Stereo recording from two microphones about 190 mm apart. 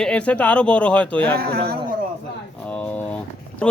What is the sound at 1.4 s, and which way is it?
Speech, 55° right (ahead or behind).